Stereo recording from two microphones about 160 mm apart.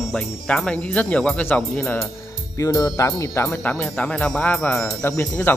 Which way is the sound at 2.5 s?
20° left (ahead or behind).